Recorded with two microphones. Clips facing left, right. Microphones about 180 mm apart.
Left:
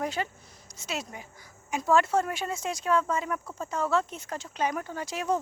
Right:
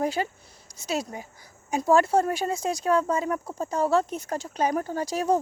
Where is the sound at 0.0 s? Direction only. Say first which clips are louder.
Right 5 dB; 35° right (ahead or behind).